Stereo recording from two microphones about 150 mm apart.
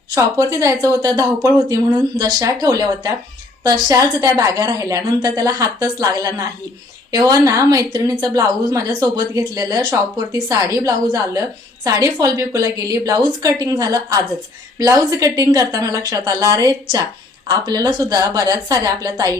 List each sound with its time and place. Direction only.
0.1 s speech: 20° right (ahead or behind)